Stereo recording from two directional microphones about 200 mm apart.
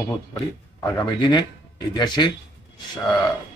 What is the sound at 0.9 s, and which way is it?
A man's voice, 20° left (ahead or behind).